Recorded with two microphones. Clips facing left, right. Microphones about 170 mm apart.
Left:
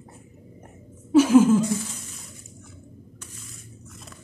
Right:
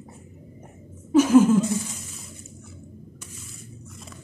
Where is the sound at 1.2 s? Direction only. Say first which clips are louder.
Even; 10° left (ahead or behind).